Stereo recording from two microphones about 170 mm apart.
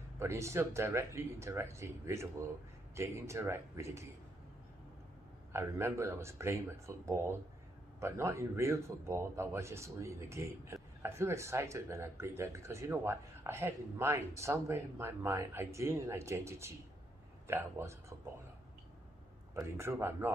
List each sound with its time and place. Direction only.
0.2 s a man's voice: 15° right (ahead or behind)
5.5 s a man's voice: 15° right (ahead or behind)
19.5 s a man's voice: 15° right (ahead or behind)